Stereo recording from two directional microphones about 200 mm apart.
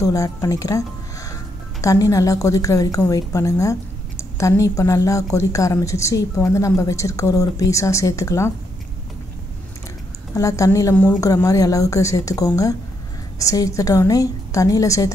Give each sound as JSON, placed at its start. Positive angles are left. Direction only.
{"t": 0.0, "sound": "a woman's voice", "side_deg": 15}
{"t": 10.3, "sound": "a woman's voice", "side_deg": 15}